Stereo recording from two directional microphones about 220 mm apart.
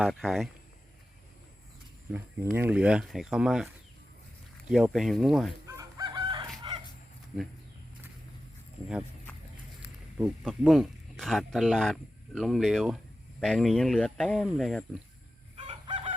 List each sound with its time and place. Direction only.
0.0 s speech: centre (ahead or behind)
2.1 s speech: 10° right (ahead or behind)
4.7 s speech: centre (ahead or behind)
5.6 s chicken: 15° right (ahead or behind)
6.6 s bow-wow: 20° right (ahead or behind)
9.8 s speech: centre (ahead or behind)
15.5 s fowl: 25° right (ahead or behind)